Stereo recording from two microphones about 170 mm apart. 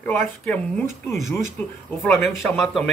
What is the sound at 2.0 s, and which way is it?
Speech, 10° left (ahead or behind).